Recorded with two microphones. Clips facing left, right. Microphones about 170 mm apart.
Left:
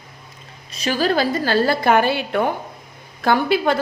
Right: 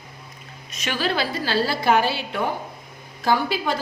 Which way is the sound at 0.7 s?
35° left (ahead or behind).